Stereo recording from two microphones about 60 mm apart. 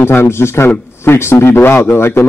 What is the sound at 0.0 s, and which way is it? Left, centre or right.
A man's voice, left.